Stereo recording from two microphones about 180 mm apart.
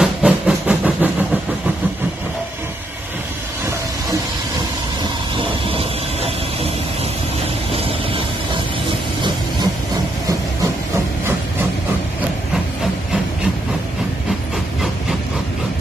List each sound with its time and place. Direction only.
0.0 s train: 5° right (ahead or behind)
5.3 s a sound: 30° right (ahead or behind)
7.7 s vehicle: 30° right (ahead or behind)